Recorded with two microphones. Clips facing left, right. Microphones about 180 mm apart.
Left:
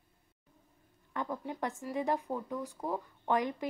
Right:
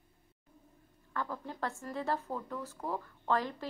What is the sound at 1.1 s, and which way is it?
Speech, 20° left (ahead or behind).